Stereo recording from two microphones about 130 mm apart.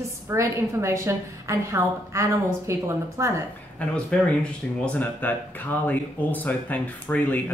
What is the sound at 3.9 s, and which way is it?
Speech, 5° left (ahead or behind).